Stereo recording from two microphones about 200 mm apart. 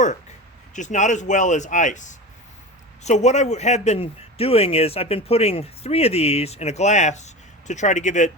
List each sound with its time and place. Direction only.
0.7 s a man's voice: 35° left (ahead or behind)